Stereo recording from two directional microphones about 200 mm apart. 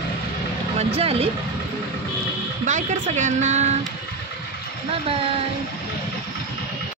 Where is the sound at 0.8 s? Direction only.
30° right (ahead or behind).